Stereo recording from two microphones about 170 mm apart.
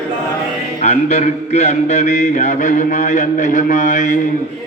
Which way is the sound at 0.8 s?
40° left (ahead or behind).